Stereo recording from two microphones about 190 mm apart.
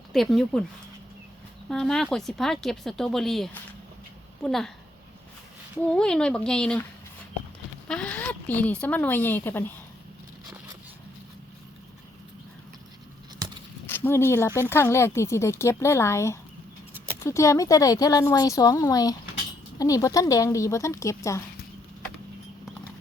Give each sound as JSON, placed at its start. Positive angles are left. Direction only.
{"t": 0.1, "sound": "speech", "side_deg": 0}
{"t": 1.7, "sound": "speech", "side_deg": 5}
{"t": 5.9, "sound": "speech", "side_deg": 5}
{"t": 7.9, "sound": "speech", "side_deg": 5}
{"t": 13.8, "sound": "speech", "side_deg": 10}